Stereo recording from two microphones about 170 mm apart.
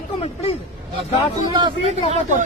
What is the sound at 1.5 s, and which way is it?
Speech, 30° right (ahead or behind).